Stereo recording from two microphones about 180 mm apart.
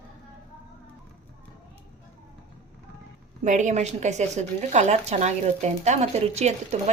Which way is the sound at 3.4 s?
40° right (ahead or behind).